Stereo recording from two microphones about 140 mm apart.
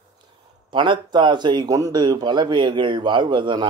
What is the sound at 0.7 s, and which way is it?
A man's voice, 35° right (ahead or behind).